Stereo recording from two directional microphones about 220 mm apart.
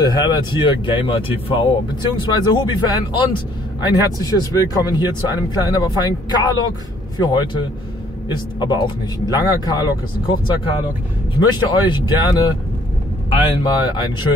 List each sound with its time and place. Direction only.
0.0 s speech: 20° left (ahead or behind)
2.3 s speech: 20° left (ahead or behind)
8.5 s speech: 20° left (ahead or behind)